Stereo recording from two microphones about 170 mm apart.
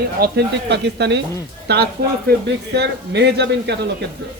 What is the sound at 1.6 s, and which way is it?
Speech, 70° right (ahead or behind).